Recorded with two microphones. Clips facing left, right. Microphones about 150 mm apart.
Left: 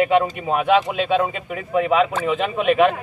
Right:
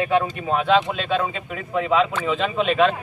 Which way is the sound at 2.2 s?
10° left (ahead or behind).